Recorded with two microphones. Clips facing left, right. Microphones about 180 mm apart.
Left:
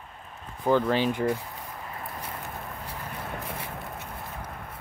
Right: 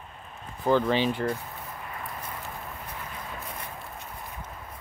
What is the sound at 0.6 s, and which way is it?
Speech, 10° left (ahead or behind).